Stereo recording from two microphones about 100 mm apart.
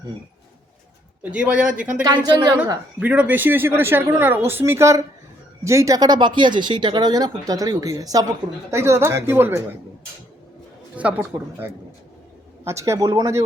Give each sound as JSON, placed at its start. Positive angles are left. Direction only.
{"t": 1.2, "sound": "speech", "side_deg": -10}
{"t": 2.2, "sound": "a woman's voice", "side_deg": -45}
{"t": 3.0, "sound": "speech", "side_deg": -15}
{"t": 8.7, "sound": "speech", "side_deg": -25}
{"t": 10.9, "sound": "speech", "side_deg": -15}
{"t": 12.6, "sound": "speech", "side_deg": -30}